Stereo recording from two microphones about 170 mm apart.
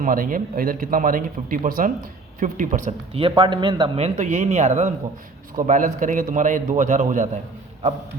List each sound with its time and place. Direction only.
0.0 s a man's voice: 55° right (ahead or behind)
3.2 s a man's voice: 30° right (ahead or behind)
4.0 s a man's voice: 45° right (ahead or behind)